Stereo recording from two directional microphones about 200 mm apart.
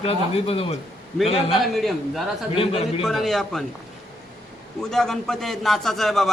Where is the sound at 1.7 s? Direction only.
Centre (ahead or behind).